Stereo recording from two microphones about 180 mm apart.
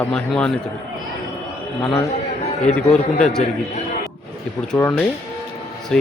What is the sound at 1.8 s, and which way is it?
Speech, 15° left (ahead or behind).